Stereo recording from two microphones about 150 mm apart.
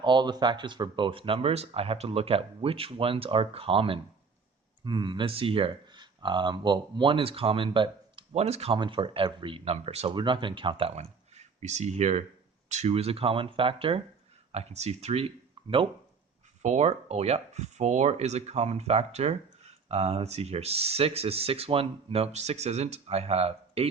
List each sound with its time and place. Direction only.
0.0 s speech: 30° right (ahead or behind)
10.1 s speech: 30° right (ahead or behind)
15.6 s a sound: 35° right (ahead or behind)
16.6 s speech: 45° right (ahead or behind)